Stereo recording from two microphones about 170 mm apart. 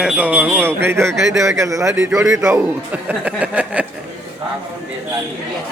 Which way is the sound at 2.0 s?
5° right (ahead or behind).